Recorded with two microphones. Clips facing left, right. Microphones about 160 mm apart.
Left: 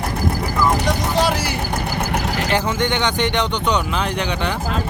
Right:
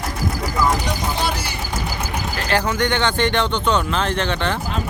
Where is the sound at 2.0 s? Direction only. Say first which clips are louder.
Left 4 dB; 80° left.